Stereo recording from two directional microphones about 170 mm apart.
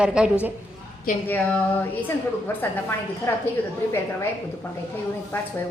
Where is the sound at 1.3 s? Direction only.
10° left (ahead or behind).